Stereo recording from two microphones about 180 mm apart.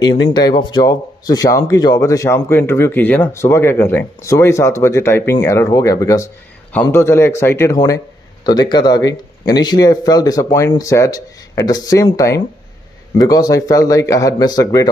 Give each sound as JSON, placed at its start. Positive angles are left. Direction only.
{"t": 0.3, "sound": "speech", "side_deg": 25}